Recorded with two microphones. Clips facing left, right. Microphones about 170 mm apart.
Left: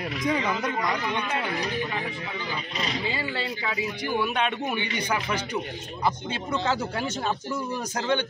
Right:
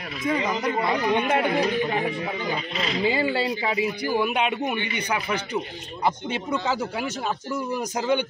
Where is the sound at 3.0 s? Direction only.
20° right (ahead or behind).